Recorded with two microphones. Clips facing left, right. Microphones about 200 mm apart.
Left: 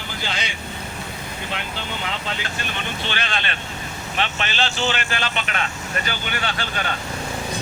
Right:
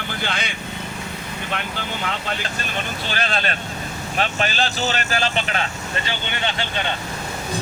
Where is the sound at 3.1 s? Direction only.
40° right (ahead or behind).